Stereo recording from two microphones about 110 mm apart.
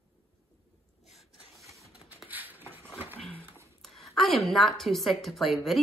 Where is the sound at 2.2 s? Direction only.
15° right (ahead or behind).